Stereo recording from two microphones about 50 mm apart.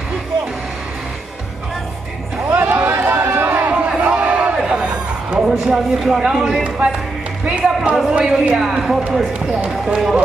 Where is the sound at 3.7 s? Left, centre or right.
Right.